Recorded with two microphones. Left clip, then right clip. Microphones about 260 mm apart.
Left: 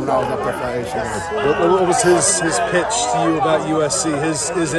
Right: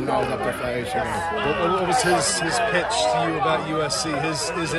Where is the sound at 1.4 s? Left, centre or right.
Left.